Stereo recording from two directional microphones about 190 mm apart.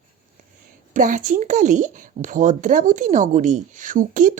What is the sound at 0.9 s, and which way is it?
A woman's voice, 45° right (ahead or behind).